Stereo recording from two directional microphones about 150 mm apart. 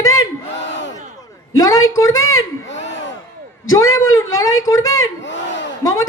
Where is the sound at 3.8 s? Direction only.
20° left (ahead or behind).